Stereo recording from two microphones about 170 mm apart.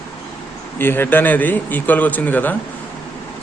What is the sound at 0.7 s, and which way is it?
A man's voice, 15° left (ahead or behind).